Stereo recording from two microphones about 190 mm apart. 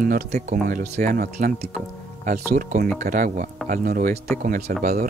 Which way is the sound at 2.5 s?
50° right (ahead or behind).